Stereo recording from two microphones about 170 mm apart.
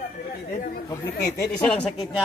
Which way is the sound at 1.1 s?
70° left (ahead or behind).